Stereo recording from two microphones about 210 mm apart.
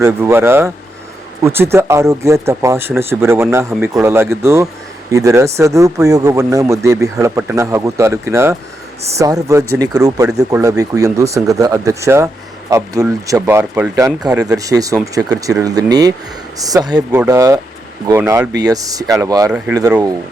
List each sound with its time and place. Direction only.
0.0 s speech: 10° right (ahead or behind)
19.5 s speech: 5° right (ahead or behind)